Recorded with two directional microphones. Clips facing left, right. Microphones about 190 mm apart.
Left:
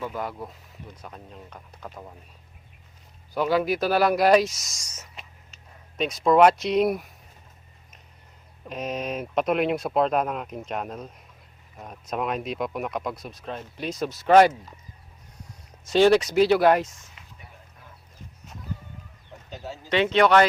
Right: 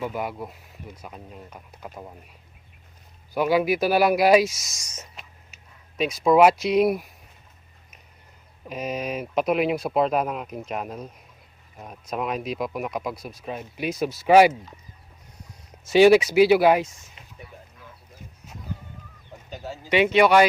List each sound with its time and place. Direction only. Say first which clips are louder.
0.0 s speech: right 2 dB; 10° right (ahead or behind)
3.3 s speech: right 2 dB; 10° right (ahead or behind)
8.6 s speech: right 1 dB; 5° right (ahead or behind)
15.8 s speech: right 3 dB; 10° right (ahead or behind)
17.2 s a sound: right 4 dB; 25° right (ahead or behind)
19.5 s speech: right 2 dB; centre (ahead or behind)